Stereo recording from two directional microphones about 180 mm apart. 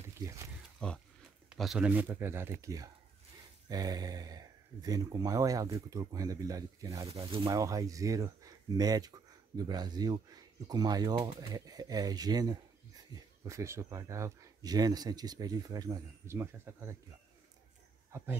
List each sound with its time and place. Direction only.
0.2 s a sound: 25° right (ahead or behind)
0.7 s wild animals: 5° left (ahead or behind)
1.5 s speech: 5° right (ahead or behind)
18.1 s speech: 15° right (ahead or behind)